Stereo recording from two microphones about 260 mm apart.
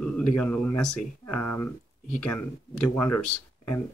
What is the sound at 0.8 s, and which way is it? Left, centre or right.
Speech, left.